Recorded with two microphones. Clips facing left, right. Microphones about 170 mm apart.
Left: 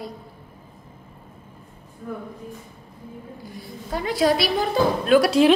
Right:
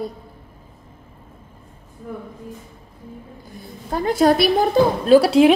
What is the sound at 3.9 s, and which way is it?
Speech, 45° right (ahead or behind).